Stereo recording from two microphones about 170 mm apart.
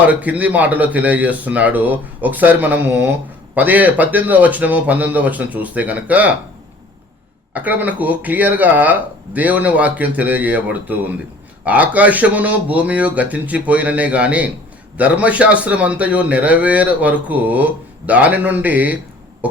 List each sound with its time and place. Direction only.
0.1 s a man's voice: 10° right (ahead or behind)
7.5 s a man's voice: 10° right (ahead or behind)